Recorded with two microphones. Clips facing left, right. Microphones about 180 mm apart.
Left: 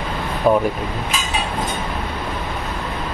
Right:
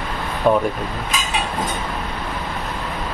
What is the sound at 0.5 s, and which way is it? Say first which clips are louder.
Speech: left 1 dB; centre (ahead or behind).